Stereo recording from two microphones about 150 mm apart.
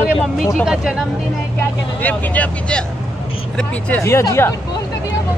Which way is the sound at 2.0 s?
10° left (ahead or behind).